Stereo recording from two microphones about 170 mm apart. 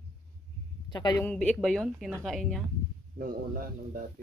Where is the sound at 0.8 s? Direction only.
25° left (ahead or behind).